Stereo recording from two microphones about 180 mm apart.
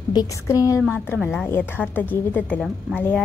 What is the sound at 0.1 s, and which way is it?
Speech, 20° left (ahead or behind).